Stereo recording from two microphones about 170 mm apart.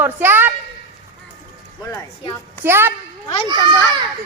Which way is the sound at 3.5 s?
25° right (ahead or behind).